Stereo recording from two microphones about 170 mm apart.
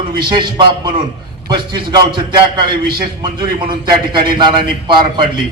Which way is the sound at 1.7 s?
25° right (ahead or behind).